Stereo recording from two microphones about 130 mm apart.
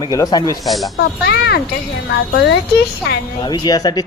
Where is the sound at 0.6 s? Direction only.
Centre (ahead or behind).